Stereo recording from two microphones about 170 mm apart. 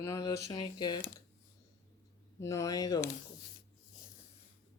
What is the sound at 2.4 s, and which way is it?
Speech, 20° left (ahead or behind).